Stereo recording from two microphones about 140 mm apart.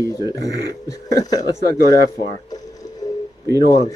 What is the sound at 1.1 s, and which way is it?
Speech, 25° left (ahead or behind).